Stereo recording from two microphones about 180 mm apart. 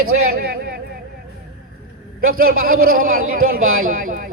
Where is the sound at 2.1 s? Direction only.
55° right (ahead or behind).